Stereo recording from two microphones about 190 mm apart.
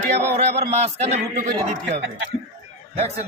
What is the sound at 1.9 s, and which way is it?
Speech, 75° right (ahead or behind).